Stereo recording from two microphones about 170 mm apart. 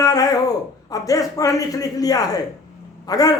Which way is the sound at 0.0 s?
20° left (ahead or behind).